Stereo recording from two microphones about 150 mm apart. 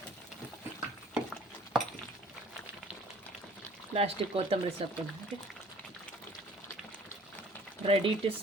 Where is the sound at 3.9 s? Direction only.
40° right (ahead or behind).